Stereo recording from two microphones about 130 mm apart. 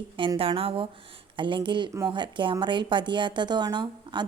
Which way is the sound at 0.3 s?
45° right (ahead or behind).